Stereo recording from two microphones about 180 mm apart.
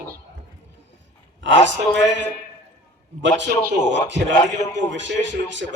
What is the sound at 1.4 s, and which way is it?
A man's voice, 90° right.